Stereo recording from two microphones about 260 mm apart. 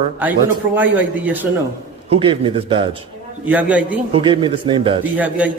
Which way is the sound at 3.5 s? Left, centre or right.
Centre.